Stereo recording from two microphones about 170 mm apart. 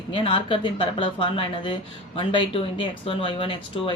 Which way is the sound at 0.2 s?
30° left (ahead or behind).